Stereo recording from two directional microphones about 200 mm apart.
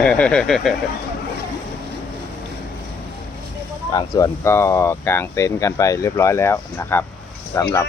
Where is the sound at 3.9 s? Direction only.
15° left (ahead or behind).